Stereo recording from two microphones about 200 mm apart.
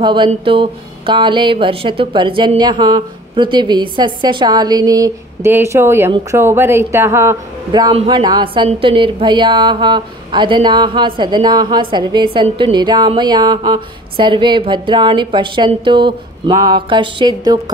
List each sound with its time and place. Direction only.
0.0 s a woman's voice: 25° right (ahead or behind)
7.9 s a woman's voice: 25° right (ahead or behind)